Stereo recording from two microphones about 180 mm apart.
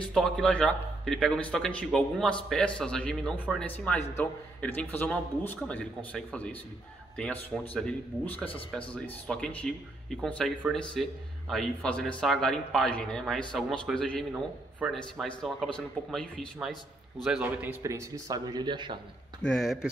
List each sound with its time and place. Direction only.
0.0 s a man's voice: 5° left (ahead or behind); by 18.9 s 25° right (ahead or behind)
19.4 s speech: centre (ahead or behind)